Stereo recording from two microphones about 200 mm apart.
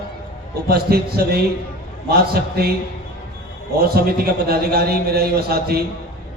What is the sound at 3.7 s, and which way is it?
A man's voice, 50° right (ahead or behind).